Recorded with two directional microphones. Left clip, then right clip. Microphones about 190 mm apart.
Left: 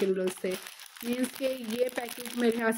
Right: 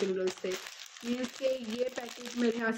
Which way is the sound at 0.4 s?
40° left (ahead or behind).